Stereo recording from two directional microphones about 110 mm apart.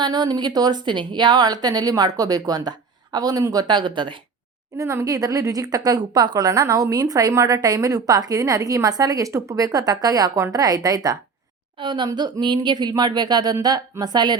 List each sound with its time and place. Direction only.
0.0 s a woman's voice: 40° right (ahead or behind)
4.8 s a woman's voice: 30° right (ahead or behind)